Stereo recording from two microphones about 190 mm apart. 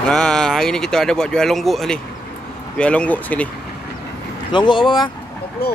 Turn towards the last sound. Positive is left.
turn(degrees=55)  # may be behind; listen again after turning